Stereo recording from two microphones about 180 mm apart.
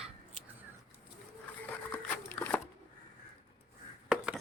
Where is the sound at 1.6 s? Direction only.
10° left (ahead or behind).